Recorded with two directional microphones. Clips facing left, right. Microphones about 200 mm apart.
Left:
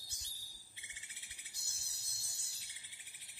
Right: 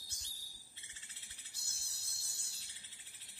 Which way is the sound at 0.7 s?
15° left (ahead or behind).